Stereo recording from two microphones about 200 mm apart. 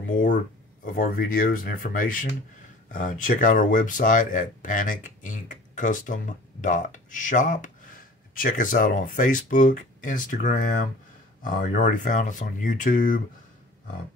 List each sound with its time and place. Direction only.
0.1 s speech: 40° left (ahead or behind)